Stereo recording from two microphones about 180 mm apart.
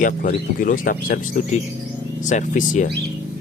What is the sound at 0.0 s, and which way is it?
Speech, 50° left (ahead or behind).